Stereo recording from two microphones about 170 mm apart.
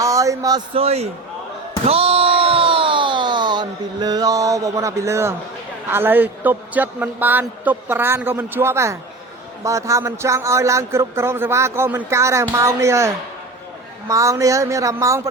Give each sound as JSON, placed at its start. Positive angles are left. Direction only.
{"t": 0.0, "sound": "speech", "side_deg": -20}
{"t": 0.8, "sound": "a man's voice", "side_deg": -40}
{"t": 1.8, "sound": "a sound", "side_deg": -35}
{"t": 5.9, "sound": "speech", "side_deg": -10}
{"t": 14.1, "sound": "speech", "side_deg": -20}